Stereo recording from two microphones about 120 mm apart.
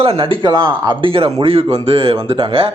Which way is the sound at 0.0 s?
50° right (ahead or behind).